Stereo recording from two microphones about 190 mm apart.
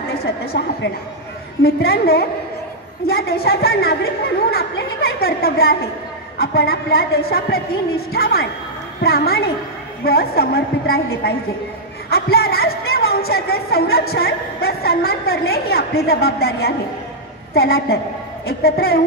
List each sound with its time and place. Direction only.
0.2 s a woman's voice: 60° left (ahead or behind)